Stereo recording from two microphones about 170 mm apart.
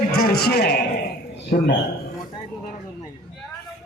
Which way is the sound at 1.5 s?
70° left (ahead or behind).